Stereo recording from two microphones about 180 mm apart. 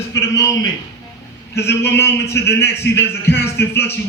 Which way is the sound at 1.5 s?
15° left (ahead or behind).